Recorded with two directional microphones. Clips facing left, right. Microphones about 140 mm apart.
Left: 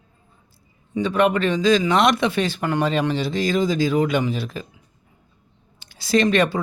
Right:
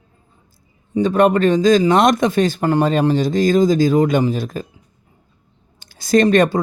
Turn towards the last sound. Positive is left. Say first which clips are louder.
# right 5 dB
turn(degrees=-45)  # may be behind; listen again after turning